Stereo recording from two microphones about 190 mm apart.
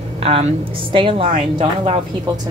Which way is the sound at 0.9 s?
30° right (ahead or behind).